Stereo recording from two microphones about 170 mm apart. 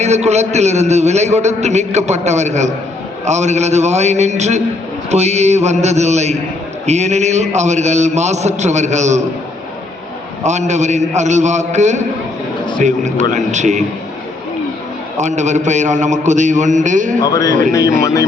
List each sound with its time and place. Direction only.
0.0 s a man's voice: 40° right (ahead or behind)
10.4 s a man's voice: 45° right (ahead or behind)
15.2 s a man's voice: 45° right (ahead or behind)
17.2 s speech: 20° left (ahead or behind)
17.5 s a man's voice: 50° right (ahead or behind)
18.0 s speech: 20° left (ahead or behind)